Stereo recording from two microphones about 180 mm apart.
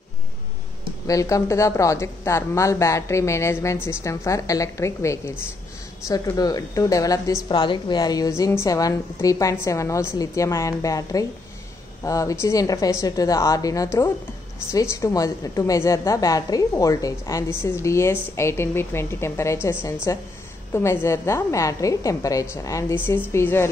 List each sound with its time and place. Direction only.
1.0 s a woman's voice: 20° left (ahead or behind)